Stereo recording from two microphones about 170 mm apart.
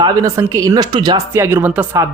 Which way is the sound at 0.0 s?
20° right (ahead or behind).